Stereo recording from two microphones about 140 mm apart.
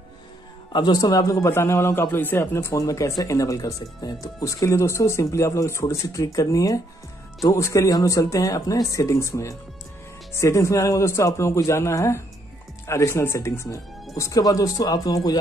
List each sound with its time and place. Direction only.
0.7 s a man's voice: 30° left (ahead or behind)